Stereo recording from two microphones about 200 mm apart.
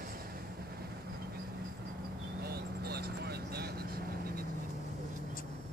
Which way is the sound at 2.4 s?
50° right (ahead or behind).